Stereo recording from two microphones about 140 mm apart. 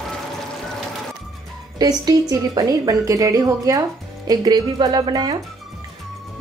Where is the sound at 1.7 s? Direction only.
25° right (ahead or behind).